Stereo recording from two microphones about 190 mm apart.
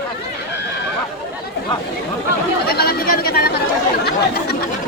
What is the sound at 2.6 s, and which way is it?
Chatter, 55° left (ahead or behind).